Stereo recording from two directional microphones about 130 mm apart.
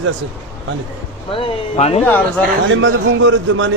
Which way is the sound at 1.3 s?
50° left (ahead or behind).